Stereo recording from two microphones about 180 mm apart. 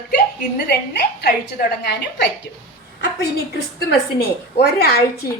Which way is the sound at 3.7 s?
65° left (ahead or behind).